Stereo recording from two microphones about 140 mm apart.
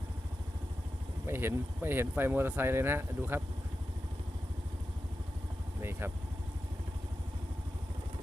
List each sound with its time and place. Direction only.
1.3 s speech: 15° right (ahead or behind)
5.8 s vehicle: 15° right (ahead or behind)